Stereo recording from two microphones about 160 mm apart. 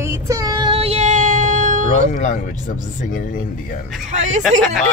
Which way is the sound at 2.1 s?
55° left (ahead or behind).